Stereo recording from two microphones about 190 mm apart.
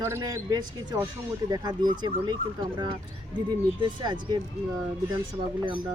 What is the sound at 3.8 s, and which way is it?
Speech, 20° right (ahead or behind).